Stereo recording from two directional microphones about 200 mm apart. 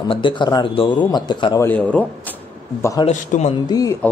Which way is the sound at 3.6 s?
20° left (ahead or behind).